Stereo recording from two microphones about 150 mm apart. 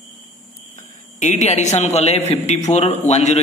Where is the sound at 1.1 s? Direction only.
50° left (ahead or behind).